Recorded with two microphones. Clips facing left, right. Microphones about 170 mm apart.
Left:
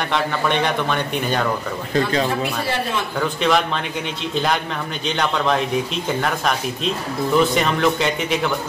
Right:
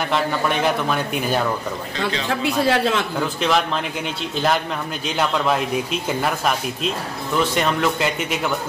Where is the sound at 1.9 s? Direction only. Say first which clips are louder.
Left 8 dB; 45° left (ahead or behind).